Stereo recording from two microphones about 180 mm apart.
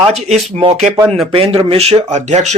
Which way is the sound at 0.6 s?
35° right (ahead or behind).